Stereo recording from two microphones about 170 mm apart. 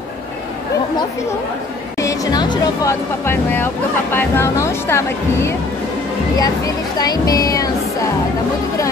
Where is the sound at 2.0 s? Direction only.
20° left (ahead or behind).